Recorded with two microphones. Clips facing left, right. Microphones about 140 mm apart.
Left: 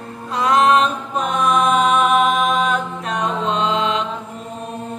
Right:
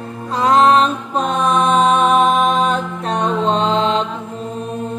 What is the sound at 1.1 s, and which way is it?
Mantra, 30° right (ahead or behind).